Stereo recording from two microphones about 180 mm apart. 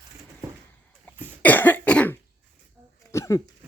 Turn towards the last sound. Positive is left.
turn(degrees=15)  # may be behind; listen again after turning